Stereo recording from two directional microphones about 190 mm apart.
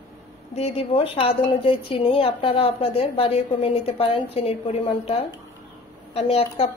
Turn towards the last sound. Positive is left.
turn(degrees=30)  # may be behind; listen again after turning